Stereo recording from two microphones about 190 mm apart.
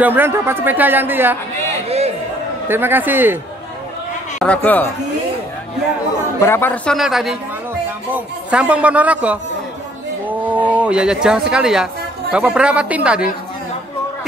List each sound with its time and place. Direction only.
0.0 s speech: 10° right (ahead or behind)
1.9 s a sound: 35° right (ahead or behind)
2.7 s speech: 10° right (ahead or behind)
4.4 s speech: 10° left (ahead or behind)
6.4 s a man's voice: 10° left (ahead or behind); by 13.3 s 5° right (ahead or behind)